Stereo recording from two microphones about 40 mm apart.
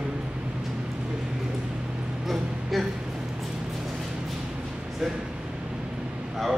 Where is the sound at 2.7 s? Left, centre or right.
Centre.